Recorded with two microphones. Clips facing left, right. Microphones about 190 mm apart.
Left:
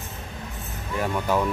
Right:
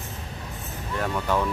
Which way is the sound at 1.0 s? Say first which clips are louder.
Left 2 dB; 10° left (ahead or behind).